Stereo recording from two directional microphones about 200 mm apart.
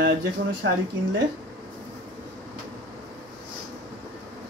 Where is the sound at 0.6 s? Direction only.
70° right (ahead or behind).